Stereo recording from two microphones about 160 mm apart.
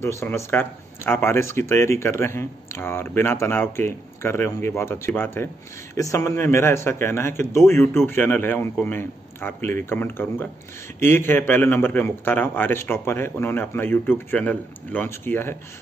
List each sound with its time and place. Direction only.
0.0 s a man's voice: 15° left (ahead or behind)